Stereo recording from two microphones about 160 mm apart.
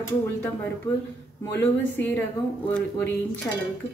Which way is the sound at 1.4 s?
15° left (ahead or behind).